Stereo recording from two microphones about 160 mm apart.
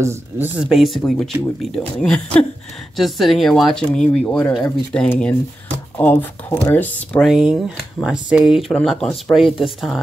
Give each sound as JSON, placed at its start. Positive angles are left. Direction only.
{"t": 0.0, "sound": "speech", "side_deg": -15}
{"t": 0.6, "sound": "speech", "side_deg": 0}
{"t": 7.2, "sound": "speech", "side_deg": 0}